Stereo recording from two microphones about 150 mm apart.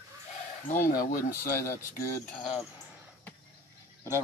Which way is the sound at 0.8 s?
65° left (ahead or behind).